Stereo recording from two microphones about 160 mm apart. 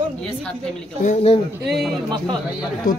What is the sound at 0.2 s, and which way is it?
Speech, 5° left (ahead or behind).